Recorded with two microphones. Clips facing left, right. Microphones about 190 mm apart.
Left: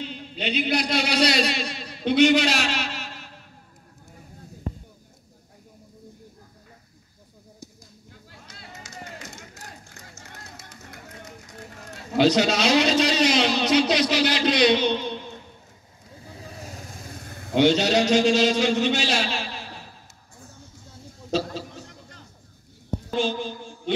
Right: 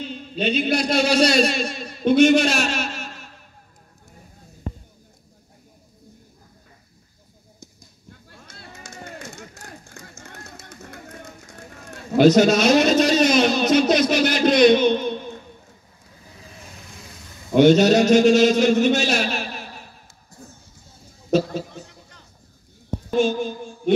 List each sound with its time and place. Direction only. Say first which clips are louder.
0.4 s a man's voice: right 4 dB; 50° right (ahead or behind)
8.1 s run: right 3 dB; 55° right (ahead or behind)
11.9 s a sound: right 5 dB; 50° right (ahead or behind)
16.3 s vehicle: left 5 dB; 35° left (ahead or behind); by 17.5 s 55° left (ahead or behind)
17.6 s a man's voice: right 6 dB; 45° right (ahead or behind)
21.3 s a sound: right 6 dB; 50° right (ahead or behind)